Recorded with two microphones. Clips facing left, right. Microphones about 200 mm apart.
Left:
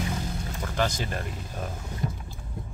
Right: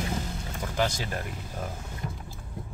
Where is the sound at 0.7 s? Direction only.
10° right (ahead or behind).